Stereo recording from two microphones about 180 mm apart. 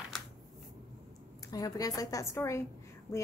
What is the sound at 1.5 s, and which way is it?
A woman's voice, 20° left (ahead or behind).